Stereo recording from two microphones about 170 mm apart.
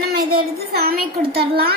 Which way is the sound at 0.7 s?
65° right (ahead or behind).